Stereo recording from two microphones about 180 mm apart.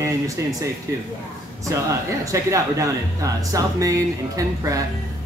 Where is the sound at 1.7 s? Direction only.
15° right (ahead or behind).